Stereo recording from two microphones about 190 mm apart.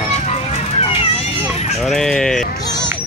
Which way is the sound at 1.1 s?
35° left (ahead or behind).